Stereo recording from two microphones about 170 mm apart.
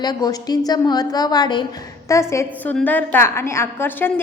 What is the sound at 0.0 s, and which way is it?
A woman's voice, 25° left (ahead or behind).